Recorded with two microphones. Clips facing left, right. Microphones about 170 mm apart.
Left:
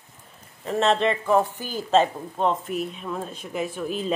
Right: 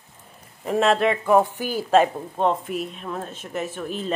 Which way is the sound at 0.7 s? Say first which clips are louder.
Right 2 dB; 5° right (ahead or behind).